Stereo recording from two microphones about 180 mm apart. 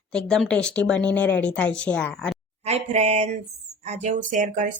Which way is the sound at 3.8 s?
40° right (ahead or behind).